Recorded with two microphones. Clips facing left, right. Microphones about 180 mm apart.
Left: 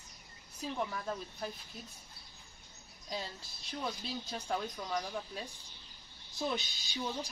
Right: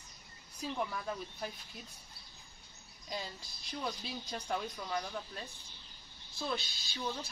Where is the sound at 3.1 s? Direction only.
Centre (ahead or behind).